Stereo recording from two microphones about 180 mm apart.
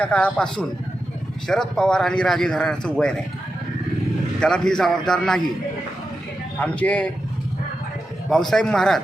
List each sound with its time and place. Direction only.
0.0 s speech: 5° left (ahead or behind)
4.4 s speech: 5° left (ahead or behind)
6.6 s speech: 10° left (ahead or behind)
8.3 s speech: centre (ahead or behind)